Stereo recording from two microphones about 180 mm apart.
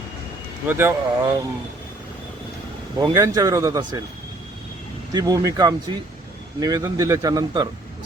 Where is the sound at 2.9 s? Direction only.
20° right (ahead or behind).